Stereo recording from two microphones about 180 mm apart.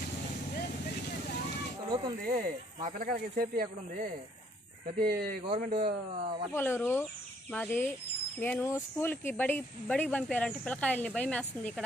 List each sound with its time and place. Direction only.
1.8 s a sound: 30° right (ahead or behind)
2.2 s speech: 50° right (ahead or behind)
5.4 s speech: 30° right (ahead or behind)
6.5 s speech: 10° left (ahead or behind)